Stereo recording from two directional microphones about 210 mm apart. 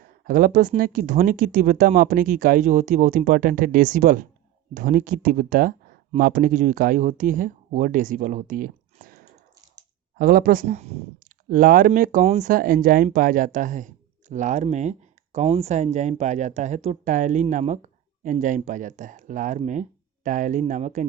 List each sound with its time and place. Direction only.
0.0 s speech: 40° right (ahead or behind)
10.2 s speech: 45° right (ahead or behind)
11.4 s speech: 45° right (ahead or behind)